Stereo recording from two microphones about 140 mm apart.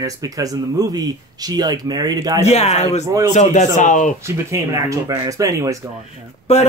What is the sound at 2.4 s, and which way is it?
Speech, 50° left (ahead or behind).